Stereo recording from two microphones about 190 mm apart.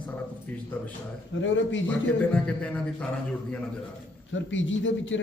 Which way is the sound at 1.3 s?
80° left.